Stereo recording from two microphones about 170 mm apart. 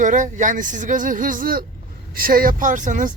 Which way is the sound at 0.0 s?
45° right (ahead or behind).